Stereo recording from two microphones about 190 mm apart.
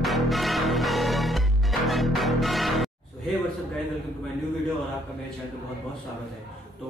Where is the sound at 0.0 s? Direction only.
Centre (ahead or behind).